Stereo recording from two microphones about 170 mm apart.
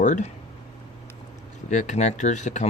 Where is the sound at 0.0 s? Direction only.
45° left (ahead or behind).